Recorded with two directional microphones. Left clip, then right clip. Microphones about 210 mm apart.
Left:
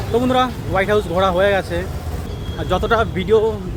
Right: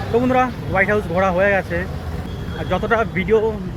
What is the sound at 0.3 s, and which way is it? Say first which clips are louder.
Speech: even; 10° left (ahead or behind).